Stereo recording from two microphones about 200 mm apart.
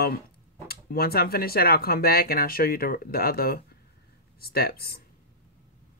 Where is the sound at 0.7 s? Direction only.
50° left (ahead or behind).